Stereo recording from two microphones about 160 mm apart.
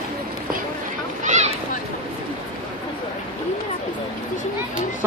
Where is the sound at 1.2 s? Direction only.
45° right (ahead or behind).